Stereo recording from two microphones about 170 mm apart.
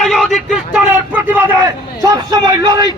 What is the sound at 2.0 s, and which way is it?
Speech, 25° right (ahead or behind).